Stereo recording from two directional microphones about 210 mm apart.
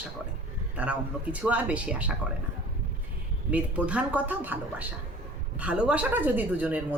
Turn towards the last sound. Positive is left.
turn(degrees=-5)  # may be behind; listen again after turning